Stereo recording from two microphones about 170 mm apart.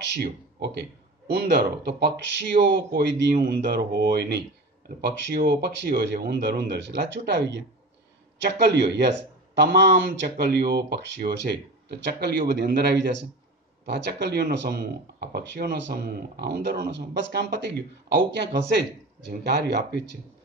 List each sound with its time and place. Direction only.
0.1 s speech: 80° right
2.5 s speech: 40° right (ahead or behind)
2.9 s speech: 70° right (ahead or behind); by 7.6 s 85° right
8.5 s speech: 75° right (ahead or behind)
13.8 s speech: 90° right
14.2 s speech: 75° right (ahead or behind)